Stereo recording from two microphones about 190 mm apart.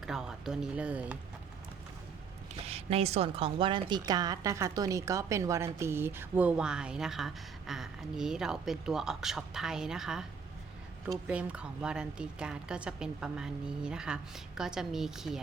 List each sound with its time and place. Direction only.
0.0 s speech: 5° right (ahead or behind)
2.6 s a woman's voice: 30° right (ahead or behind); by 10.2 s 5° right (ahead or behind)
11.3 s a woman's voice: 5° right (ahead or behind)